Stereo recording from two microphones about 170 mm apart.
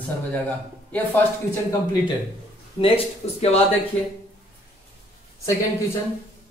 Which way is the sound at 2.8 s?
35° left (ahead or behind).